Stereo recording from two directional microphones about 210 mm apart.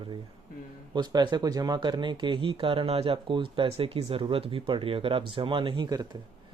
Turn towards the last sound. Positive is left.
turn(degrees=-20)  # may be behind; listen again after turning